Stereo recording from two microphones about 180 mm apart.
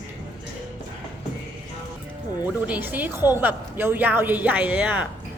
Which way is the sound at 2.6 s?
10° right (ahead or behind).